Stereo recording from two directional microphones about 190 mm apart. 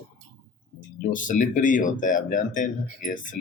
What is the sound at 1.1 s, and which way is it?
Speech, 45° left (ahead or behind).